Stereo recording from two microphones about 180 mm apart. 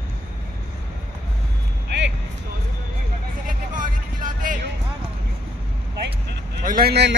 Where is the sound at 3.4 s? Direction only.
45° right (ahead or behind).